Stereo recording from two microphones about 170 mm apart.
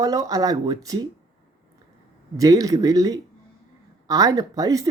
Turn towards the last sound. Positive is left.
turn(degrees=-20)  # may be behind; listen again after turning